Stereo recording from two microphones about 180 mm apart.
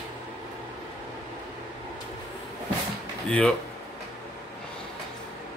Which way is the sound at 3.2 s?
5° left (ahead or behind).